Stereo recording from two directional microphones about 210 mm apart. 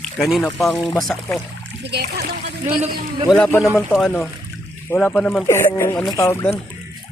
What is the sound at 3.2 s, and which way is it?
Speech, 5° left (ahead or behind).